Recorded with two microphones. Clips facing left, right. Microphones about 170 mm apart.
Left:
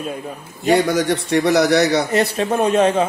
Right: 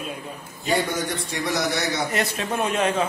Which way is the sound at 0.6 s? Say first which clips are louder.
Left 8 dB; 80° left.